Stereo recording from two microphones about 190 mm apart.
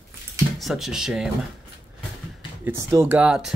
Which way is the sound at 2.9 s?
10° right (ahead or behind).